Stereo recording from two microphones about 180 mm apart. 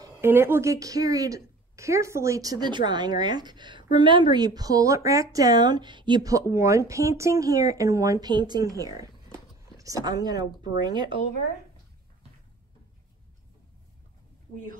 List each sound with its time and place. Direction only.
0.0 s speech: 15° right (ahead or behind)